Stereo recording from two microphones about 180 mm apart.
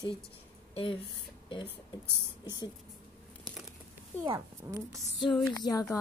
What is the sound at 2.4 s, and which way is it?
Speech, 25° left (ahead or behind).